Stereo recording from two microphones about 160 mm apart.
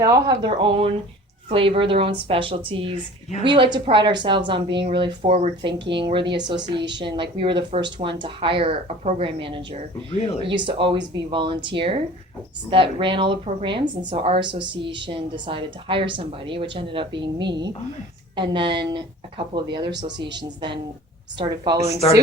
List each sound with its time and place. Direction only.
0.0 s a woman's voice: 25° right (ahead or behind)
5.2 s speech: 45° right (ahead or behind)
5.9 s a woman's voice: 30° right (ahead or behind)